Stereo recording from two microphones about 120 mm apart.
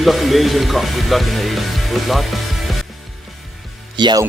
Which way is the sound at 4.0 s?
40° right (ahead or behind).